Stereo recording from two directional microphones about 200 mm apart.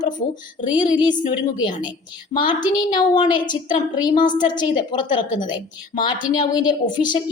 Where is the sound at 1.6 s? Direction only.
25° left (ahead or behind).